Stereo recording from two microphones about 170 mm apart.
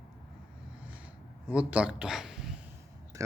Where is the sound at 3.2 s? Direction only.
15° right (ahead or behind).